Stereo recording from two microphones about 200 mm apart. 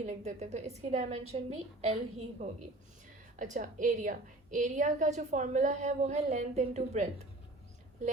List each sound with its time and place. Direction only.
0.0 s a woman's voice: 35° right (ahead or behind)